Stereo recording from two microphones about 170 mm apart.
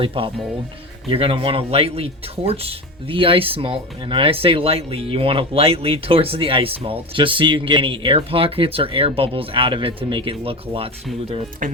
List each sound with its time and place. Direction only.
0.0 s speech: 30° right (ahead or behind)